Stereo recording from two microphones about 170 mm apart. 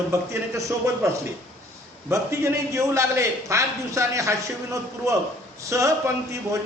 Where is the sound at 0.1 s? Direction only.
20° right (ahead or behind).